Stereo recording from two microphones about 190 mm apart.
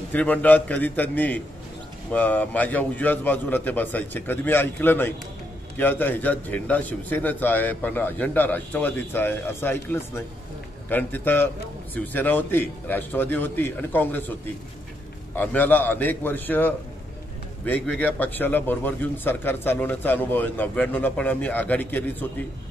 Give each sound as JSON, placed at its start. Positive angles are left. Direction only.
{"t": 0.1, "sound": "a man's voice", "side_deg": 10}